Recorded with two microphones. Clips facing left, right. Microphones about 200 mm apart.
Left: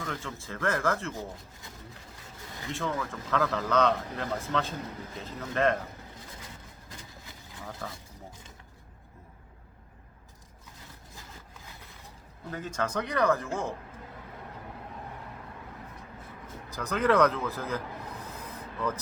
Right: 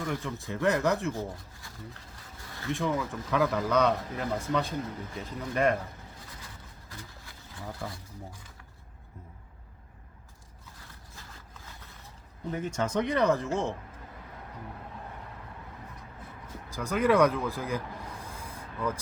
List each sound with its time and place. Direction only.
0.0 s speech: 15° right (ahead or behind)
2.7 s speech: 15° right (ahead or behind)
7.8 s speech: 10° right (ahead or behind)
12.5 s speech: 20° right (ahead or behind)
16.6 s speech: 10° right (ahead or behind)
18.2 s rub: 10° right (ahead or behind)